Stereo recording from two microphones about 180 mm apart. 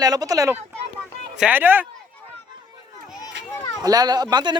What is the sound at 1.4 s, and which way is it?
Speech, 10° right (ahead or behind).